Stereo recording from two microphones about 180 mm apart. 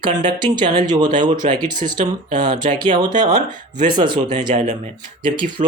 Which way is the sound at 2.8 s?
25° right (ahead or behind).